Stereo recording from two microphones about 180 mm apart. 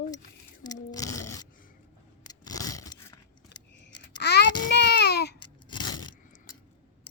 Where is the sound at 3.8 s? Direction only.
70° left (ahead or behind).